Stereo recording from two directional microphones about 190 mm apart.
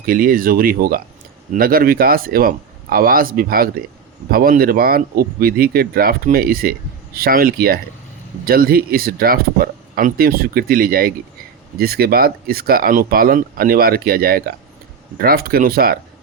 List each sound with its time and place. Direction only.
0.0 s speech: 50° right (ahead or behind)